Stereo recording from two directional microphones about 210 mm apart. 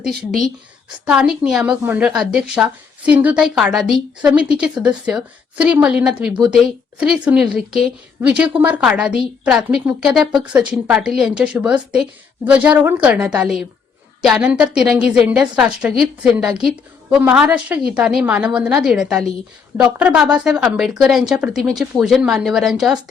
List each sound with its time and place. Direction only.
1.0 s a woman's voice: 5° right (ahead or behind)